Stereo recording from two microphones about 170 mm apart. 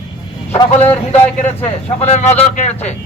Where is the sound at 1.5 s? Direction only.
40° left (ahead or behind).